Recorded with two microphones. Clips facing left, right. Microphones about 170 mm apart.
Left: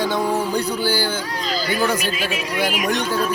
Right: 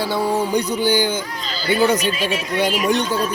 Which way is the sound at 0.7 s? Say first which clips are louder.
Right 3 dB; 15° right (ahead or behind).